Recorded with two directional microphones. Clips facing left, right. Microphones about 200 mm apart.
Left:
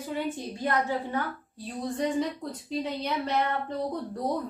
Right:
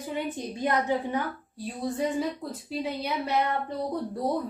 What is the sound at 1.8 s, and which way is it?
A woman's voice, 5° right (ahead or behind).